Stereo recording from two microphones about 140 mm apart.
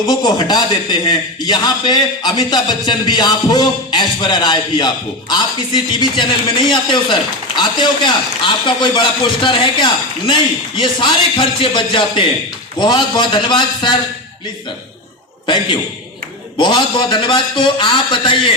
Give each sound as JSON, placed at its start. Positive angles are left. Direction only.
{"t": 0.0, "sound": "a man's voice", "side_deg": 30}
{"t": 16.6, "sound": "a man's voice", "side_deg": 35}